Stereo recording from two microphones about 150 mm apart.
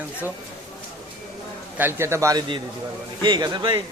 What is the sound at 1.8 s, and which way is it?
A man's voice, 15° right (ahead or behind).